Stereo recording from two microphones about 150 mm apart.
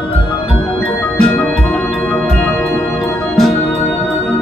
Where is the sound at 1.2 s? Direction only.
10° left (ahead or behind).